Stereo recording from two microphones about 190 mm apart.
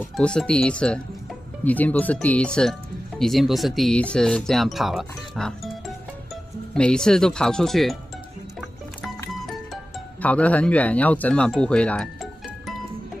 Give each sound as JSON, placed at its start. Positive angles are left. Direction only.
{"t": 0.0, "sound": "speech", "side_deg": 0}
{"t": 6.7, "sound": "speech", "side_deg": 5}
{"t": 10.2, "sound": "speech", "side_deg": 5}